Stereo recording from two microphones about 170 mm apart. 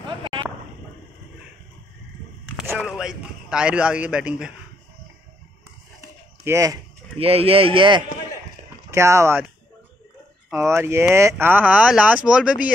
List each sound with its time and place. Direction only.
0.2 s a sound: 30° right (ahead or behind)
2.8 s speech: 5° right (ahead or behind)
6.4 s speech: 20° right (ahead or behind)
7.2 s a man's voice: 35° right (ahead or behind)
8.9 s speech: 15° right (ahead or behind)
10.5 s speech: 15° right (ahead or behind)